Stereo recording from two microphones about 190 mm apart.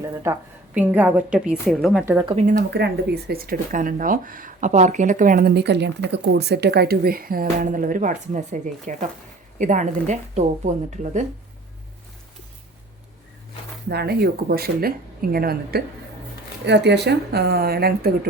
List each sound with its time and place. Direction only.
0.3 s a woman's voice: 15° right (ahead or behind)
2.2 s a woman's voice: 35° right (ahead or behind)
2.6 s a woman's voice: 60° right (ahead or behind); by 11.3 s 40° right (ahead or behind)
13.9 s speech: 55° right (ahead or behind)
16.6 s speech: 65° right (ahead or behind)